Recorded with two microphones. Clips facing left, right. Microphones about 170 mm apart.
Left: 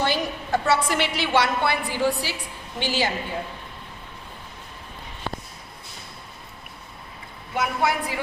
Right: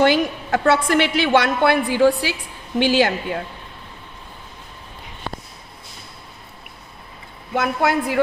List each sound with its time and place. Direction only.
0.0 s a woman's voice: 60° right (ahead or behind)
7.5 s a woman's voice: 65° right (ahead or behind)